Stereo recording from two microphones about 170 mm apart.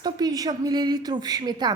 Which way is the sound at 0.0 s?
25° right (ahead or behind).